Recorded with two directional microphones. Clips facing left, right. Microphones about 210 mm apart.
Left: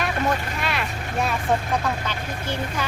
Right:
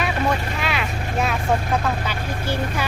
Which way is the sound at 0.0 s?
Centre (ahead or behind).